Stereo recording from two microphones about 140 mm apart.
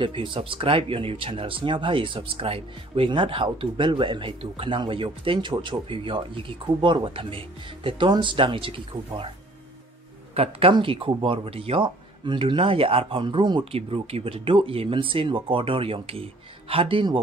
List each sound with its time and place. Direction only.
0.0 s speech: 40° right (ahead or behind)
10.3 s speech: 45° right (ahead or behind)